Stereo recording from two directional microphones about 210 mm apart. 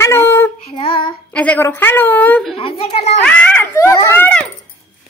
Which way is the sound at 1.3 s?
5° left (ahead or behind).